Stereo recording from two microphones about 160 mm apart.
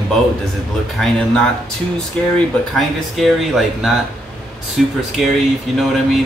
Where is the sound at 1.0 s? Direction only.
Centre (ahead or behind).